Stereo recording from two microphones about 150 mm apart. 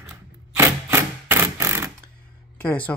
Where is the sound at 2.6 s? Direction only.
10° left (ahead or behind).